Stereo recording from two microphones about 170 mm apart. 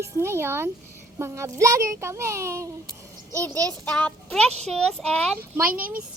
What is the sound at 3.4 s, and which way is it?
A child's voice, 10° left (ahead or behind).